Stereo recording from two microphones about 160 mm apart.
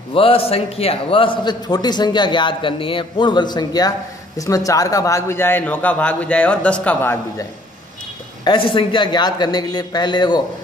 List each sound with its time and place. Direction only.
0.1 s a man's voice: 35° left (ahead or behind); by 7.4 s 15° left (ahead or behind)
8.5 s a man's voice: 35° left (ahead or behind)